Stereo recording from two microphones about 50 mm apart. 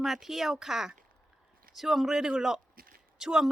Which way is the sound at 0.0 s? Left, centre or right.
Centre.